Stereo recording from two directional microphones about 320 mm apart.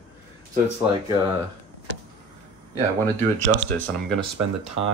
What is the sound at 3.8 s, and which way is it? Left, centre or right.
Speech, centre.